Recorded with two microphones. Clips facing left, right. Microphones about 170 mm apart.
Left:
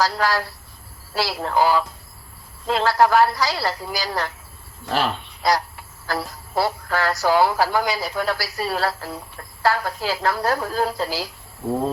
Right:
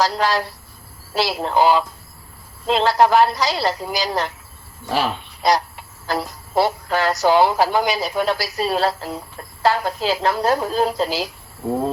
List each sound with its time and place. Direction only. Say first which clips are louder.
0.0 s speech: right 2 dB; 20° right (ahead or behind)
4.9 s speech: right 1 dB; 10° right (ahead or behind)
5.4 s speech: right 3 dB; 20° right (ahead or behind)